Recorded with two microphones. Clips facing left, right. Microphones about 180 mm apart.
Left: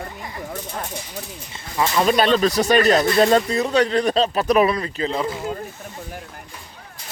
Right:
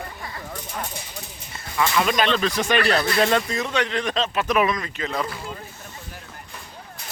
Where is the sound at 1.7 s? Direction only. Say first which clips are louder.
Left 3 dB; 30° left (ahead or behind).